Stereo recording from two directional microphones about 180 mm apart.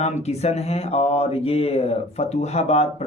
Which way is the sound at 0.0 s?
35° left (ahead or behind).